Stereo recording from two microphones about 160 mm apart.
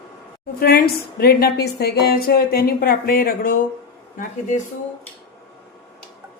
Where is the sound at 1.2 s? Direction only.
75° left (ahead or behind).